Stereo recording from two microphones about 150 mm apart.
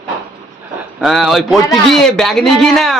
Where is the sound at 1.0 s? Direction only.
Centre (ahead or behind).